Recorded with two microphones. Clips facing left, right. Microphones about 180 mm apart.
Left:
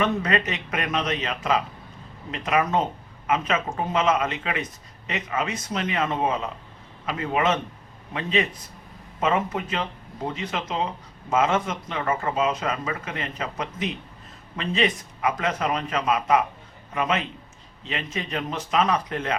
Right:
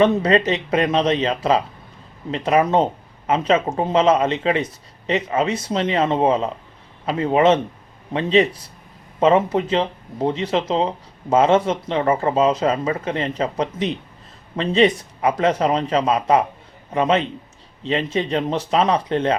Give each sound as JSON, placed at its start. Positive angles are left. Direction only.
{"t": 0.0, "sound": "speech", "side_deg": -30}